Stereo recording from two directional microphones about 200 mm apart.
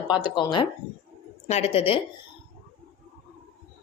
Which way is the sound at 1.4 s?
35° left (ahead or behind).